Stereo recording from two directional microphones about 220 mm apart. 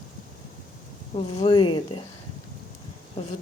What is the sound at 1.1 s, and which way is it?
Speech, 25° left (ahead or behind).